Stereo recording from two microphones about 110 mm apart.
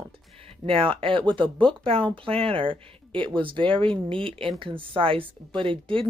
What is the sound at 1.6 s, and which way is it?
Speech, 55° right (ahead or behind).